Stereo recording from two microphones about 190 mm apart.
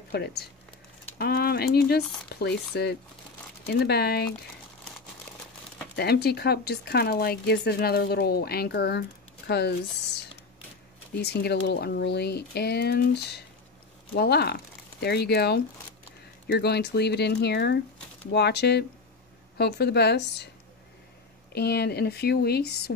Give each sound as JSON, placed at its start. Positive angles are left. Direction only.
{"t": 0.1, "sound": "speech", "side_deg": 55}
{"t": 5.9, "sound": "speech", "side_deg": 60}
{"t": 21.5, "sound": "speech", "side_deg": 60}